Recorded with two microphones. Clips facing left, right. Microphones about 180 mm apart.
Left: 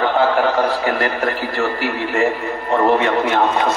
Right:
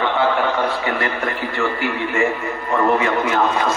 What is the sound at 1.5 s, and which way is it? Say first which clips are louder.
A man's voice: left 1 dB; 40° left (ahead or behind).